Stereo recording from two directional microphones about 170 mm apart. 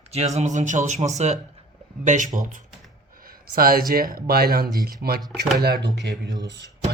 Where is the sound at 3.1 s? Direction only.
60° right (ahead or behind).